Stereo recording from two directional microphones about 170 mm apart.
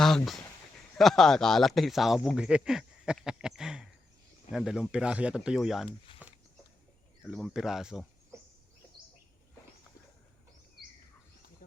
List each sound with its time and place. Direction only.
0.9 s speech: centre (ahead or behind)
6.1 s a sound: 30° left (ahead or behind)
7.2 s speech: centre (ahead or behind)